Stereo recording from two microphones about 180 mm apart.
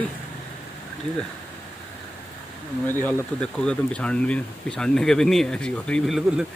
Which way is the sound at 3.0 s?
5° left (ahead or behind).